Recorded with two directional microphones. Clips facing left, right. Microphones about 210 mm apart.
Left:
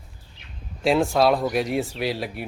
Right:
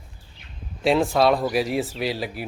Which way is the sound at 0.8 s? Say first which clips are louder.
Even; centre (ahead or behind).